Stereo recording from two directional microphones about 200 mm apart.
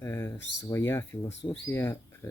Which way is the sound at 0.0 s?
15° left (ahead or behind).